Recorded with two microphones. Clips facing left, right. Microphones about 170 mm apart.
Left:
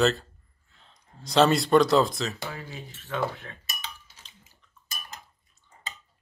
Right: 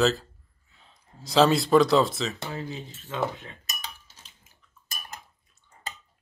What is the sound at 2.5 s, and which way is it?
Speech, 25° right (ahead or behind).